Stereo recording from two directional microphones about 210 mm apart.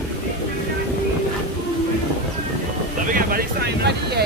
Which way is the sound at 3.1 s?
50° right (ahead or behind).